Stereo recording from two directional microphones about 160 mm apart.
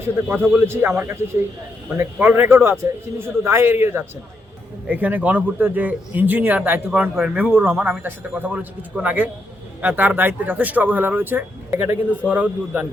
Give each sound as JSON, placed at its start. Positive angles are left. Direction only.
{"t": 0.5, "sound": "a man's voice", "side_deg": -15}